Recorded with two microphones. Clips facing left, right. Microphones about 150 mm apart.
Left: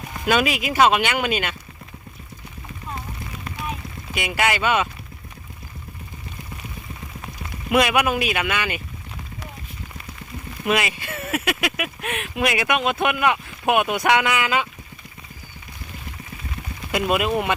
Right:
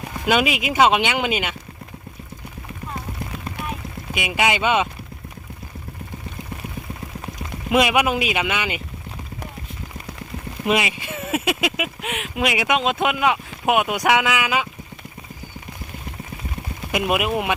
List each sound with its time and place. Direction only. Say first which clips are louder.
0.3 s speech: right 1 dB; 15° right (ahead or behind)
4.1 s speech: right 1 dB; 15° right (ahead or behind)
7.7 s speech: right 1 dB; 15° right (ahead or behind)
10.7 s speech: right 1 dB; 20° right (ahead or behind)
16.9 s speech: even; 15° right (ahead or behind)